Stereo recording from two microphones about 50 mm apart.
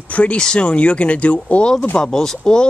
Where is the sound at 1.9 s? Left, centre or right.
Centre.